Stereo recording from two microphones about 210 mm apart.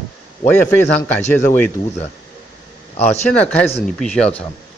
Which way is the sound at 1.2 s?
35° left (ahead or behind).